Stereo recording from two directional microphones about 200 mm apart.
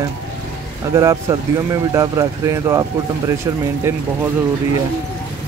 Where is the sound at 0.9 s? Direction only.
15° right (ahead or behind).